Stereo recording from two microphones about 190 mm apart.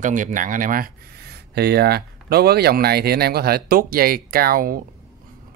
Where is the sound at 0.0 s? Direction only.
40° right (ahead or behind).